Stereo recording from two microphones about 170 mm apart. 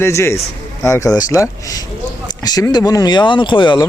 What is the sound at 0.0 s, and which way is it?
Speech, 15° left (ahead or behind).